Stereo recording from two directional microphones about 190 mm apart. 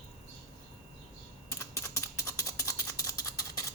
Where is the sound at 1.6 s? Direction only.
15° left (ahead or behind).